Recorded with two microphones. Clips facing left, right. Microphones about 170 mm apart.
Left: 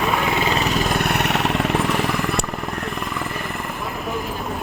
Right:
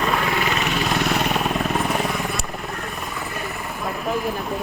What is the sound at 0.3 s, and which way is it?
Vehicle, 25° left (ahead or behind).